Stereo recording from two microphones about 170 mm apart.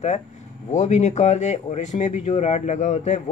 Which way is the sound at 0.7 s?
45° left (ahead or behind).